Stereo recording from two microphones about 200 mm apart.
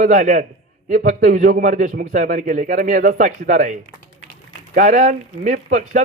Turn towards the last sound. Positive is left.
turn(degrees=-40)  # may be behind; listen again after turning